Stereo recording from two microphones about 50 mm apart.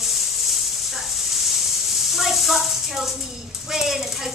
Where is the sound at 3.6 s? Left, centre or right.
Centre.